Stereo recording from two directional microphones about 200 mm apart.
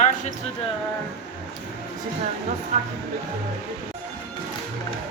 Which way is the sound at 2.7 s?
35° right (ahead or behind).